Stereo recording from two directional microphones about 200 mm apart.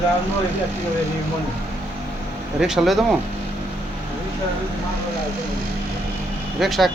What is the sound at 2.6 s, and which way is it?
Speech, centre (ahead or behind).